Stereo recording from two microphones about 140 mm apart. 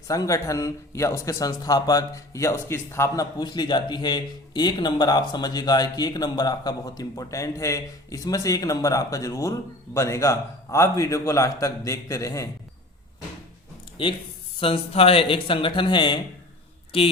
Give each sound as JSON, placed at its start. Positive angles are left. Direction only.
{"t": 0.1, "sound": "speech", "side_deg": 25}
{"t": 14.0, "sound": "speech", "side_deg": 40}